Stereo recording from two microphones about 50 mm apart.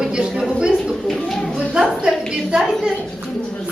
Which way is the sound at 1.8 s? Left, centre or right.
Centre.